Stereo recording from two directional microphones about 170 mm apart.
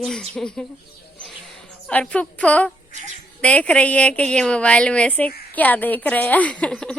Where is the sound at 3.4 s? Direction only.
10° left (ahead or behind).